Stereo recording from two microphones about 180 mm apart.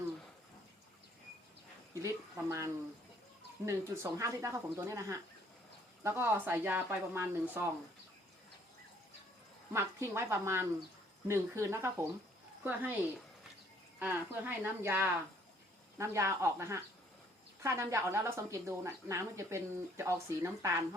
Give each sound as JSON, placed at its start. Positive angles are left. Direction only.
{"t": 2.0, "sound": "a woman's voice", "side_deg": -15}
{"t": 3.7, "sound": "a woman's voice", "side_deg": -15}
{"t": 9.7, "sound": "a woman's voice", "side_deg": -15}
{"t": 14.0, "sound": "a woman's voice", "side_deg": -10}